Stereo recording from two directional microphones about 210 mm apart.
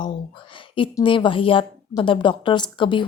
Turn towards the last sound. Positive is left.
turn(degrees=20)  # may be behind; listen again after turning